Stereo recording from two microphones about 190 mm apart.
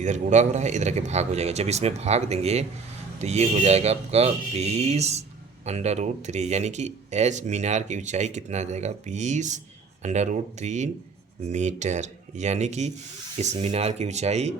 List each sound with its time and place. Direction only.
0.0 s speech: 40° right (ahead or behind)